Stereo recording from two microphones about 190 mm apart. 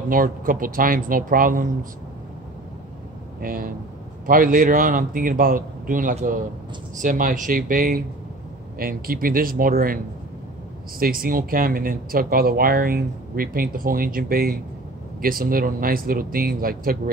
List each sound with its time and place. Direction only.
0.1 s speech: 45° right (ahead or behind)
3.3 s speech: 50° right (ahead or behind)
11.0 s speech: 50° right (ahead or behind)